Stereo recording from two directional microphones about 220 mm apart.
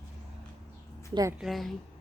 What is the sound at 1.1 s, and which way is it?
Speech, 15° right (ahead or behind).